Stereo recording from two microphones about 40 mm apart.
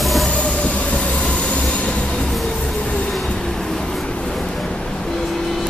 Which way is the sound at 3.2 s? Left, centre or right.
Centre.